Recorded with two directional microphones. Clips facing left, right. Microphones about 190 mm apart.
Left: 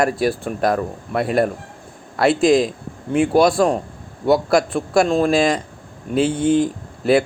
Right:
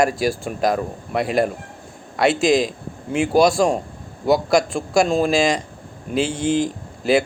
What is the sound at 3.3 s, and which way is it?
Speech, 5° left (ahead or behind).